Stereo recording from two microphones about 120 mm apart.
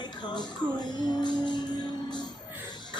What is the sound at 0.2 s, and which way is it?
Music, 35° left (ahead or behind).